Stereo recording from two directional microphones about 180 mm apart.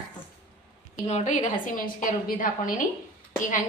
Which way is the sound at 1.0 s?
40° left (ahead or behind).